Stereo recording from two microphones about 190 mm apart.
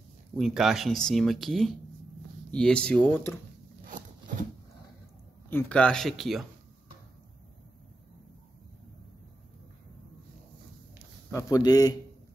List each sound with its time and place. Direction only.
0.4 s speech: centre (ahead or behind)
3.8 s zipper: 45° right (ahead or behind)
5.5 s speech: 10° left (ahead or behind)
11.3 s a man's voice: 20° left (ahead or behind)